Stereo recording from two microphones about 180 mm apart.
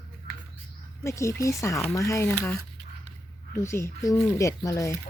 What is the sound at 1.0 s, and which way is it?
Speech, 15° left (ahead or behind).